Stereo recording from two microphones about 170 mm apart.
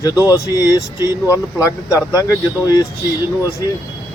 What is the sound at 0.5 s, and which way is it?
Speech, 20° left (ahead or behind).